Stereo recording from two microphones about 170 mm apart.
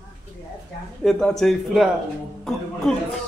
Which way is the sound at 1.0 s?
Centre (ahead or behind).